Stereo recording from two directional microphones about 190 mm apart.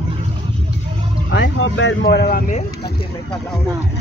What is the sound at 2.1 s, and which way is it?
Speech, 55° left (ahead or behind).